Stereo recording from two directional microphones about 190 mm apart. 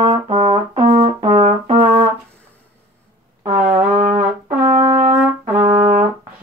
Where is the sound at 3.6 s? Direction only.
45° right (ahead or behind).